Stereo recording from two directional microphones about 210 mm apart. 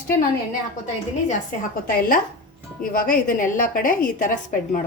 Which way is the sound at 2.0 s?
40° left (ahead or behind).